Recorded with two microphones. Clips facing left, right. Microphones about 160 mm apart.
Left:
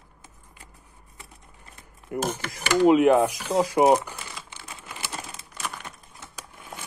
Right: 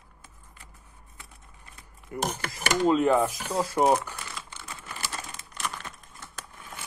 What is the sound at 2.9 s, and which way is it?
Speech, 15° left (ahead or behind).